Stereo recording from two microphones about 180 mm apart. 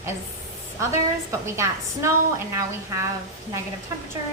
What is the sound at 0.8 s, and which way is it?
A woman's voice, 15° right (ahead or behind).